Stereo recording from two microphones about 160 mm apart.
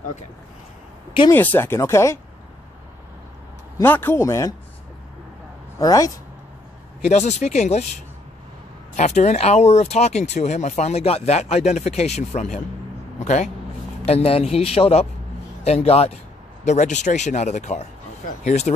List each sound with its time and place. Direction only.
1.3 s speech: 10° left (ahead or behind)
3.8 s speech: 15° left (ahead or behind)
5.8 s speech: 20° left (ahead or behind)
7.1 s speech: 45° left (ahead or behind)
8.9 s speech: 45° left (ahead or behind)